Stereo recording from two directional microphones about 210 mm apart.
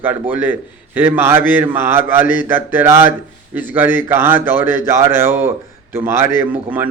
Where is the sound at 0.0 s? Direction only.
10° right (ahead or behind).